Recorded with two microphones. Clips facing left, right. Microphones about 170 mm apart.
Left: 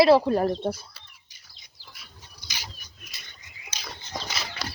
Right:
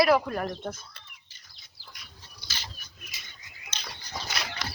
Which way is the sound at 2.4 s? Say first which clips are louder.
Left 1 dB; 10° left (ahead or behind).